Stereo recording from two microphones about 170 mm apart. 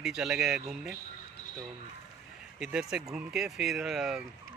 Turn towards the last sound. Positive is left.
turn(degrees=0)  # may be behind; listen again after turning